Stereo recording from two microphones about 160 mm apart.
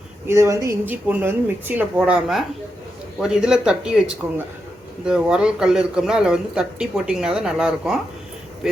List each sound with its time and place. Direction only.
0.3 s speech: 20° right (ahead or behind); by 8.8 s 5° right (ahead or behind)